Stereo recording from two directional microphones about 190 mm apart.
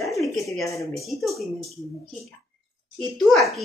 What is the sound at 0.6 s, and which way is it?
Speech, 15° left (ahead or behind).